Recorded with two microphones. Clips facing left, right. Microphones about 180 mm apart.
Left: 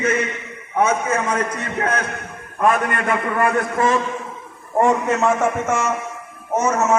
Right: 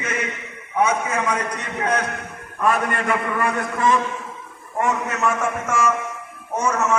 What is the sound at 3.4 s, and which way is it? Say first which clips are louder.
Speech: left 4 dB; 50° left (ahead or behind).